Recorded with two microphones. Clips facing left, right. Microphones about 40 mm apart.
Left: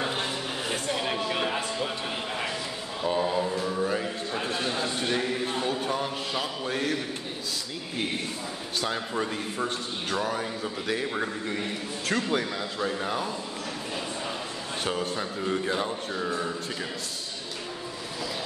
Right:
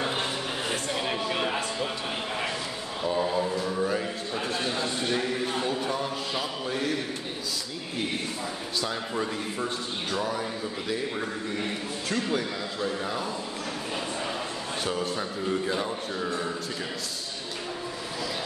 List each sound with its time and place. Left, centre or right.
0.1 s a sound: centre
3.2 s mantra: centre
3.6 s music: centre
4.4 s a sound: left
6.4 s a man's voice: left
12.1 s a man's voice: left
14.8 s speech: left
15.5 s speech: centre